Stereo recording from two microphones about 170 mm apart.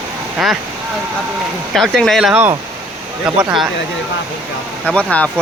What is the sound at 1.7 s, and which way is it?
Speech, centre (ahead or behind).